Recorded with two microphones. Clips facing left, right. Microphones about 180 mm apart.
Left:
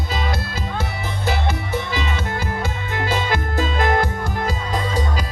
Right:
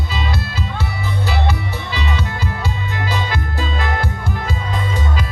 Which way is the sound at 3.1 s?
50° left (ahead or behind).